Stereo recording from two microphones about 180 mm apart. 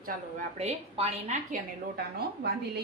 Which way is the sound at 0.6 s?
35° right (ahead or behind).